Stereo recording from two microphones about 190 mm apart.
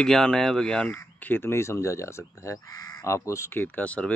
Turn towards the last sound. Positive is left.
turn(degrees=5)  # may be behind; listen again after turning